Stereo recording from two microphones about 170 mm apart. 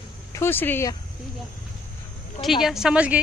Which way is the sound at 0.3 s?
15° left (ahead or behind).